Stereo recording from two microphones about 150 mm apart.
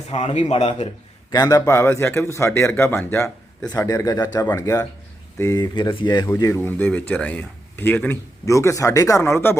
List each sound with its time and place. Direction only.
0.1 s a man's voice: 45° left (ahead or behind)
1.3 s a man's voice: 25° left (ahead or behind)
3.7 s speech: 25° left (ahead or behind)
5.7 s speech: 35° left (ahead or behind); by 9.6 s 15° left (ahead or behind)